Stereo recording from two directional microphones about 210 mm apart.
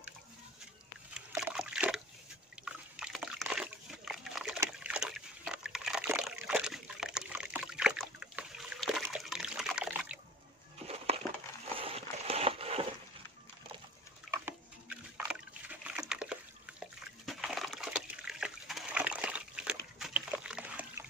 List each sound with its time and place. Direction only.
1.1 s trickle: 5° right (ahead or behind)
2.6 s dog: 5° right (ahead or behind)
9.0 s water: centre (ahead or behind)
11.8 s a sound: 30° right (ahead or behind)
14.3 s a sound: 10° right (ahead or behind)
17.3 s dog: centre (ahead or behind)